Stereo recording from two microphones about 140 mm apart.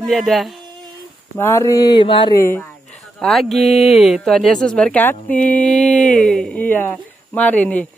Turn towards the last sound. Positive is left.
turn(degrees=10)  # may be behind; listen again after turning